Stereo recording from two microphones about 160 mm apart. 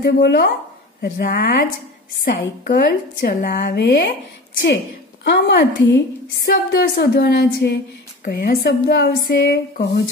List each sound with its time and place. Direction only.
0.0 s a woman's voice: 90° left
1.0 s a woman's voice: 75° left (ahead or behind)
5.2 s a woman's voice: 90° left
8.2 s a woman's voice: 65° left (ahead or behind); by 9.8 s 85° left